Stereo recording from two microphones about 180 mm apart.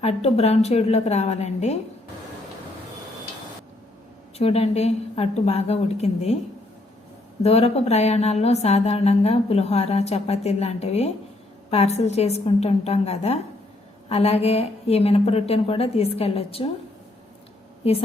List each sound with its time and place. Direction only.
0.0 s speech: 35° left (ahead or behind)
4.4 s speech: 35° left (ahead or behind)
7.4 s speech: 35° left (ahead or behind)
17.8 s speech: 35° left (ahead or behind)